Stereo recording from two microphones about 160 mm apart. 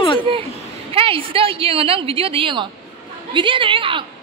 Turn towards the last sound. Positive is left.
turn(degrees=-35)  # may be behind; listen again after turning